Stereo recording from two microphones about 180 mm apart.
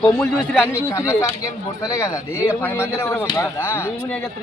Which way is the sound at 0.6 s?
15° left (ahead or behind).